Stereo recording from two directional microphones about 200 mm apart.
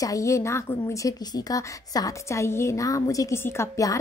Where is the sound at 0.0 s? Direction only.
15° left (ahead or behind).